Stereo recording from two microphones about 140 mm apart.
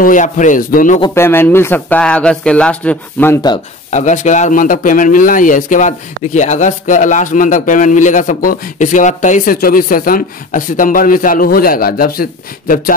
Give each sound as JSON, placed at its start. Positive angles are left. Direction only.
{"t": 0.0, "sound": "a man's voice", "side_deg": 65}
{"t": 1.1, "sound": "speech", "side_deg": 15}
{"t": 3.9, "sound": "a man's voice", "side_deg": 60}